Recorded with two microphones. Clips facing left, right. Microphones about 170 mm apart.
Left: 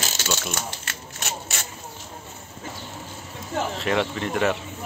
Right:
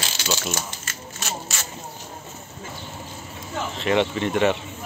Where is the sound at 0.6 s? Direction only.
65° left (ahead or behind).